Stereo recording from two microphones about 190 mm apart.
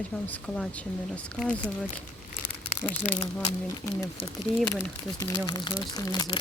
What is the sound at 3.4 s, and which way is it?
Speech, 20° left (ahead or behind).